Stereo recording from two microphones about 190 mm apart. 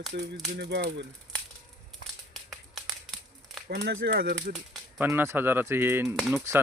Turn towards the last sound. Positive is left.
turn(degrees=-15)  # may be behind; listen again after turning